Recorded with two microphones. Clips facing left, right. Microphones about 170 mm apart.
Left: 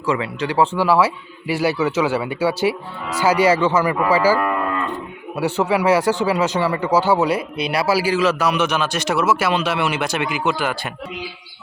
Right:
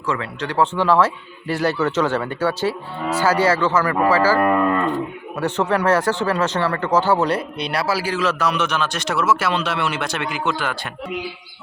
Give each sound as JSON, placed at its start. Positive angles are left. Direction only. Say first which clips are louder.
{"t": 0.0, "sound": "speech", "louder": "left 3 dB", "side_deg": 5}
{"t": 4.4, "sound": "cattle", "louder": "right 4 dB", "side_deg": -45}
{"t": 5.4, "sound": "speech", "louder": "left 1 dB", "side_deg": 10}